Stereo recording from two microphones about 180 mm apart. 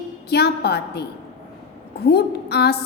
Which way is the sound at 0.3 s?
65° left (ahead or behind).